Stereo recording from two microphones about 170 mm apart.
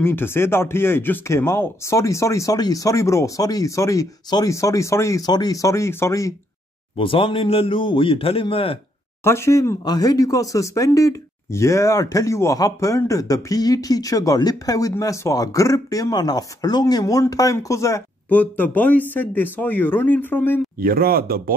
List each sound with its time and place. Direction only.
0.0 s speech: 15° left (ahead or behind)
7.0 s a man's voice: 30° left (ahead or behind)
9.2 s speech: 15° left (ahead or behind)
20.8 s speech: 60° right (ahead or behind)